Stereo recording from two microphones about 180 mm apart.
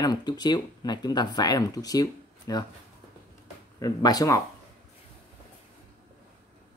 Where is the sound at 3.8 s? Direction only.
20° left (ahead or behind).